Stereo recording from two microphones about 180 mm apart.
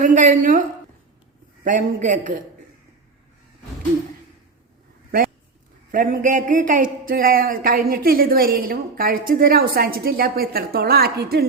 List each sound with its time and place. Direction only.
0.0 s a woman's voice: 45° right (ahead or behind)
1.6 s a man's voice: 45° right (ahead or behind)
5.9 s speech: 50° right (ahead or behind)